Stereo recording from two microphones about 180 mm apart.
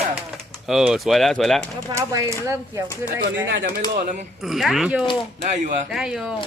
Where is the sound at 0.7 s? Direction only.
Centre (ahead or behind).